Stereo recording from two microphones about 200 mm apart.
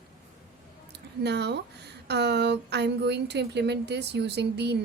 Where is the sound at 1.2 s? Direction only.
55° right (ahead or behind).